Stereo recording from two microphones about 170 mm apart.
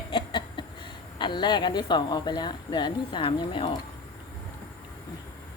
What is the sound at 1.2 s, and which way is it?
Speech, 25° left (ahead or behind).